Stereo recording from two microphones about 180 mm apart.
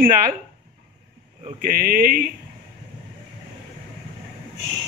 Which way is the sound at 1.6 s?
55° right (ahead or behind).